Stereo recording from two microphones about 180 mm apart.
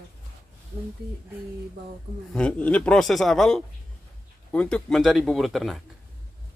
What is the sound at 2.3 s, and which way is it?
A man's voice, 5° left (ahead or behind).